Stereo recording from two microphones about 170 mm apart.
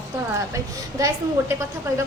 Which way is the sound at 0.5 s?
20° right (ahead or behind).